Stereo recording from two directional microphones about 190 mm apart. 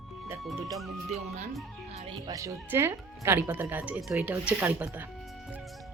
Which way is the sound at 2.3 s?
15° right (ahead or behind).